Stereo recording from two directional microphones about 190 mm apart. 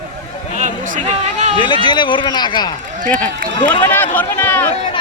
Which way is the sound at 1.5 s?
25° left (ahead or behind).